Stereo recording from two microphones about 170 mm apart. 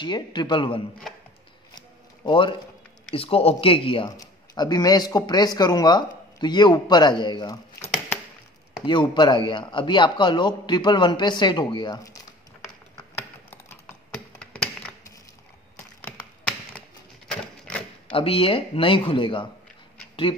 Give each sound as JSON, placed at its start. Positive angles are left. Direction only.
{"t": 0.0, "sound": "a man's voice", "side_deg": 25}
{"t": 1.8, "sound": "a sound", "side_deg": 30}
{"t": 3.1, "sound": "a man's voice", "side_deg": 35}
{"t": 8.8, "sound": "a man's voice", "side_deg": 25}
{"t": 13.5, "sound": "typing", "side_deg": 15}
{"t": 16.0, "sound": "tap", "side_deg": 10}
{"t": 17.3, "sound": "a sound", "side_deg": 5}
{"t": 18.1, "sound": "speech", "side_deg": 35}